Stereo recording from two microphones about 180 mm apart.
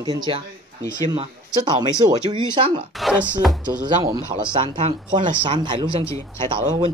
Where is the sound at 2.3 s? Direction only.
25° right (ahead or behind).